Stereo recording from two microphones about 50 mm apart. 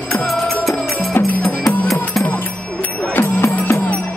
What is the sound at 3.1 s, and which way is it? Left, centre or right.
Music, left.